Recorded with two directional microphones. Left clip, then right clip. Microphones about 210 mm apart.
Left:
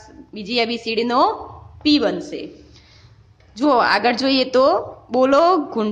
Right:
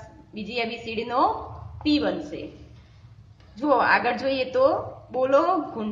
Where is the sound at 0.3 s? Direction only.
50° left (ahead or behind).